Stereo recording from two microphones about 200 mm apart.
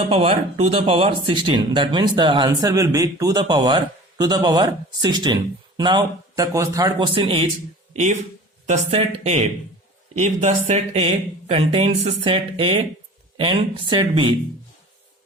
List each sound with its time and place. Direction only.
0.1 s speech: 30° right (ahead or behind)
8.6 s speech: 30° right (ahead or behind)